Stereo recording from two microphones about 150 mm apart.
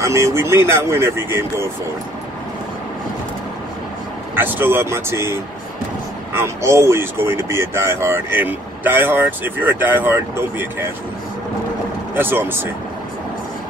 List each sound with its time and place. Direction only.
0.0 s speech: 20° right (ahead or behind)
4.4 s speech: 15° right (ahead or behind)
12.2 s speech: 15° right (ahead or behind)